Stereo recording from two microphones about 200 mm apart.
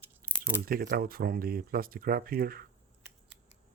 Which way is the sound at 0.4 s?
45° right (ahead or behind).